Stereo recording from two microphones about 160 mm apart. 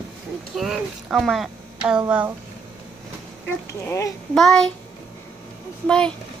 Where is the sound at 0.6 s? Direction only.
Centre (ahead or behind).